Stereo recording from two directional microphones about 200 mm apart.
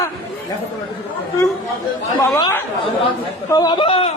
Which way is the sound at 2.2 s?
15° left (ahead or behind).